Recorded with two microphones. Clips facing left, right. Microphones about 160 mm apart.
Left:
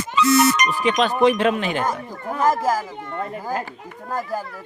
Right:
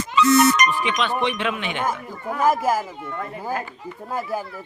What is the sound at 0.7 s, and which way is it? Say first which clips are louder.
Music: left 3 dB; 40° left (ahead or behind).